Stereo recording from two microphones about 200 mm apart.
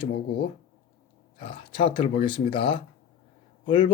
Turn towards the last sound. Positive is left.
turn(degrees=25)  # may be behind; listen again after turning